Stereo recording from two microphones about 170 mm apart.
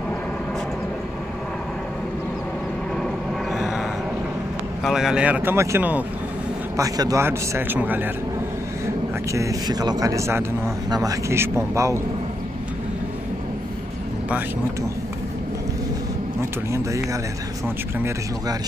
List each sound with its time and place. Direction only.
3.5 s a sound: centre (ahead or behind)
4.8 s a man's voice: 5° right (ahead or behind)
6.8 s a man's voice: 20° right (ahead or behind)
9.3 s a man's voice: 20° right (ahead or behind)
16.7 s a man's voice: 20° right (ahead or behind)